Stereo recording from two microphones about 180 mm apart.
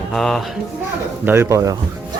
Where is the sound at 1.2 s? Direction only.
15° right (ahead or behind).